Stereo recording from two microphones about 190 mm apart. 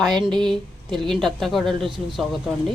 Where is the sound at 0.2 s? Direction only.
25° right (ahead or behind).